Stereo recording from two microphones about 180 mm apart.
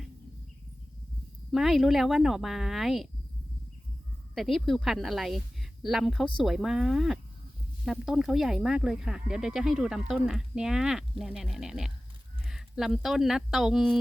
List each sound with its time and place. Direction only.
1.5 s speech: centre (ahead or behind)
4.4 s speech: centre (ahead or behind)